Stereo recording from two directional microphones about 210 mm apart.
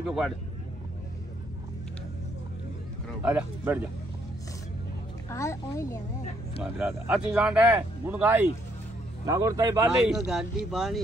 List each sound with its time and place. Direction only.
0.0 s speech: centre (ahead or behind)
3.2 s speech: 10° right (ahead or behind)
5.3 s speech: 15° left (ahead or behind)
6.6 s speech: centre (ahead or behind)
9.8 s speech: 5° right (ahead or behind)